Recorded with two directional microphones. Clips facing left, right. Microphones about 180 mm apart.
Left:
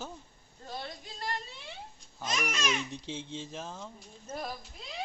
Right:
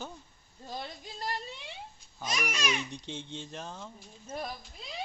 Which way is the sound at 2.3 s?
10° right (ahead or behind).